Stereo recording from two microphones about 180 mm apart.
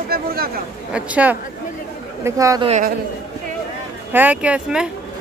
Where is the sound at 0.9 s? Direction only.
5° right (ahead or behind).